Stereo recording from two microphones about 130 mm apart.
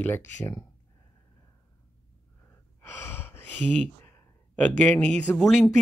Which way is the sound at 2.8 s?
15° left (ahead or behind).